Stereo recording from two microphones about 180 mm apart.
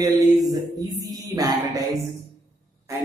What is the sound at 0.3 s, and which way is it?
Mantra, 20° right (ahead or behind).